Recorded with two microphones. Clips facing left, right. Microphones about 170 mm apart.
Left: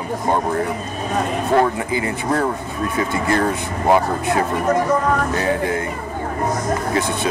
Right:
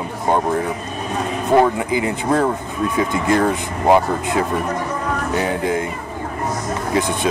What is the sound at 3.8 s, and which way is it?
Speech, 20° right (ahead or behind).